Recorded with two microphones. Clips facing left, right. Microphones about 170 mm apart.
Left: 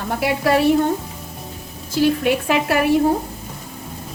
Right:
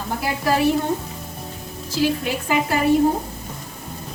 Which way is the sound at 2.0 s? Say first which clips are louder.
Left 5 dB; 60° left (ahead or behind).